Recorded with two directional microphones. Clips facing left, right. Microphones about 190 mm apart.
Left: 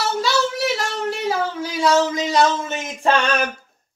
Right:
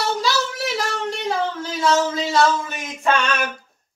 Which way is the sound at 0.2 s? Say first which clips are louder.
Left 3 dB; centre (ahead or behind).